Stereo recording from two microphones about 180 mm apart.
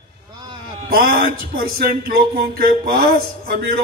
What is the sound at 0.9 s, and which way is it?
A man's voice, 55° right (ahead or behind).